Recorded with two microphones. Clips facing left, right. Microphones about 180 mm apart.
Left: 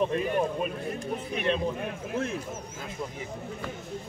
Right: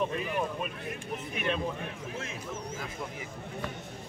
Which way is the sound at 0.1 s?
35° left (ahead or behind).